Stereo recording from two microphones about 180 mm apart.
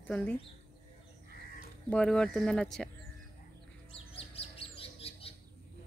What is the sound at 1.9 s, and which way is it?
A woman's voice, 5° left (ahead or behind).